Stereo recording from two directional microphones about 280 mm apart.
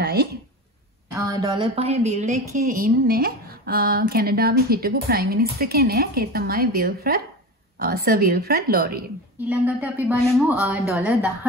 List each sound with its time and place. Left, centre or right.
0.0 s a sound: right
1.1 s a woman's voice: centre; by 9.0 s right
9.5 s a woman's voice: centre